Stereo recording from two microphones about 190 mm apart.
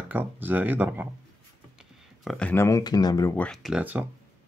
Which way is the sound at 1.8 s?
Centre (ahead or behind).